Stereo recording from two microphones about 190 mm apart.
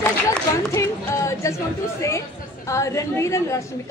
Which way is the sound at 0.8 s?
15° left (ahead or behind).